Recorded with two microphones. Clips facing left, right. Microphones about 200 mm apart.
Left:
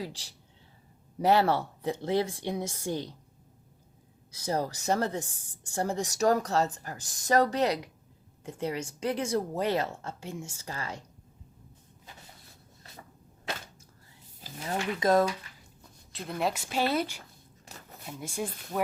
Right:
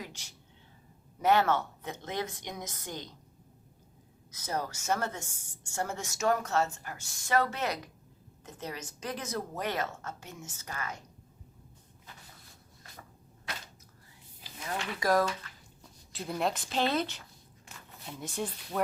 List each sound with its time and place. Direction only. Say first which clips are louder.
0.0 s a woman's voice: left 6 dB; 35° left (ahead or behind)
4.3 s a woman's voice: left 5 dB; 30° left (ahead or behind)
14.4 s a sound: left 4 dB; 35° left (ahead or behind)
15.0 s speech: left 3 dB; 25° left (ahead or behind)
16.1 s a woman's voice: left 1 dB; centre (ahead or behind)
17.7 s a sound: left 4 dB; 40° left (ahead or behind)
18.1 s speech: left 1 dB; 10° left (ahead or behind)